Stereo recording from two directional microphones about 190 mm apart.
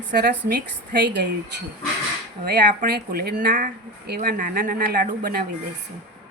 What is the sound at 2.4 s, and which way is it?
Speech, 55° right (ahead or behind).